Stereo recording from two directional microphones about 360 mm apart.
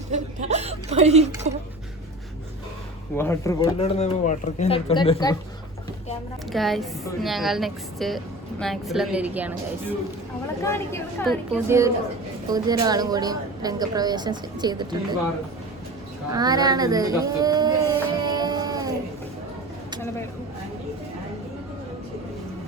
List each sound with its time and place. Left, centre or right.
0.1 s a woman's voice: centre
3.2 s speech: centre
6.5 s a woman's voice: centre
10.6 s a woman's voice: centre
16.3 s a sound: centre